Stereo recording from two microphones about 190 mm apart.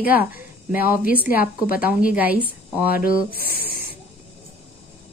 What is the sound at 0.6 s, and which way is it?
A woman's voice, 10° right (ahead or behind).